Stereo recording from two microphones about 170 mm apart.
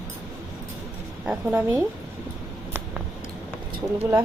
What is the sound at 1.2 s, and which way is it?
Speech, 10° right (ahead or behind).